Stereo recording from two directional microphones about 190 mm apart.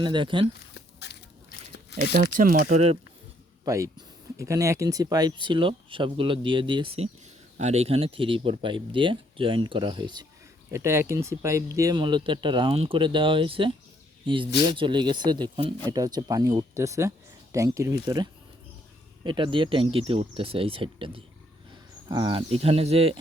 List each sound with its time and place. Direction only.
0.0 s speech: 25° right (ahead or behind)
0.7 s biting: 65° left (ahead or behind)
2.1 s speech: 45° right (ahead or behind)
2.7 s speech: 30° right (ahead or behind)
3.6 s speech: 20° right (ahead or behind)